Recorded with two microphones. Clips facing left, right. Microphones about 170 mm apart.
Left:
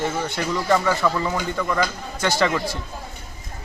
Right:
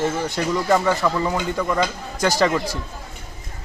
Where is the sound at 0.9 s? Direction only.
Centre (ahead or behind).